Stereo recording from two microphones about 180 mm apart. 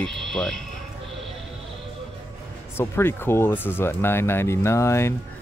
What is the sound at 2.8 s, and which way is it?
Speech, 15° left (ahead or behind).